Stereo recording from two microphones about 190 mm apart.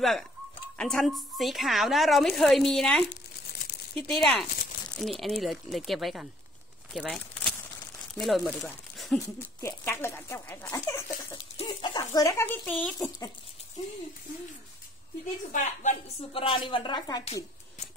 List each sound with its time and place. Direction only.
0.7 s a woman's voice: centre (ahead or behind)
6.9 s a sound: centre (ahead or behind)
8.1 s a woman's voice: centre (ahead or behind)
8.9 s a sound: centre (ahead or behind)
9.2 s speech: 15° left (ahead or behind)
15.5 s speech: 40° left (ahead or behind)